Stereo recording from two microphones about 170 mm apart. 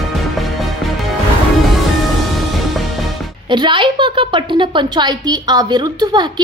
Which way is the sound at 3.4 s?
30° right (ahead or behind).